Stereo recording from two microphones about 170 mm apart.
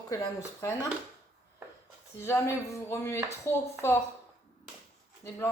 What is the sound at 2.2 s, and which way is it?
Speech, 15° left (ahead or behind).